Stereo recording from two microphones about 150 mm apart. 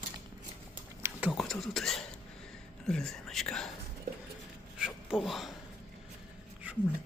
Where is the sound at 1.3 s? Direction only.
Centre (ahead or behind).